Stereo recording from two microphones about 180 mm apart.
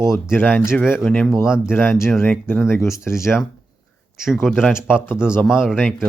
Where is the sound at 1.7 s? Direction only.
10° left (ahead or behind).